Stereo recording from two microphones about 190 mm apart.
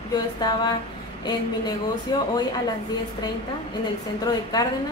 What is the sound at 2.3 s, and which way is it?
A woman's voice, 20° left (ahead or behind).